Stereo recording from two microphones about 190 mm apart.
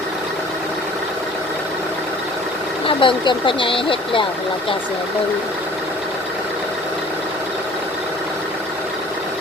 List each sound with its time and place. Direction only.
2.8 s speech: 25° left (ahead or behind)